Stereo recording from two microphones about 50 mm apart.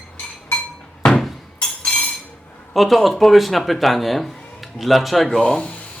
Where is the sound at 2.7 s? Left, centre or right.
Centre.